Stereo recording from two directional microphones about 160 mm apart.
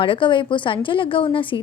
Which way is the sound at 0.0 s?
30° left (ahead or behind).